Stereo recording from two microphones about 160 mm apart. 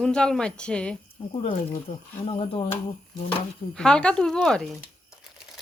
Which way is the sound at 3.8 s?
5° left (ahead or behind).